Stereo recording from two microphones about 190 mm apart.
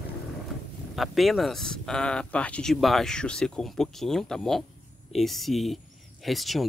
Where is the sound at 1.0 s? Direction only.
Centre (ahead or behind).